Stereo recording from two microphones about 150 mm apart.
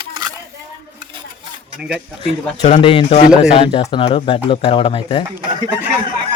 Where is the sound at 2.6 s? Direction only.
45° left (ahead or behind).